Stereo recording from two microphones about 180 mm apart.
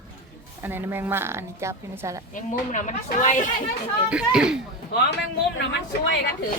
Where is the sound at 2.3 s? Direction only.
45° left (ahead or behind).